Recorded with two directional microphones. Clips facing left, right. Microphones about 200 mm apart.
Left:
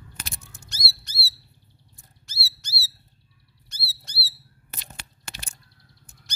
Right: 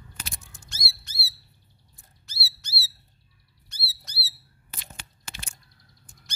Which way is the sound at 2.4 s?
45° left (ahead or behind).